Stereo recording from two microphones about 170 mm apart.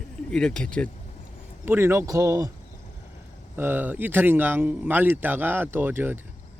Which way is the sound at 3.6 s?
10° right (ahead or behind).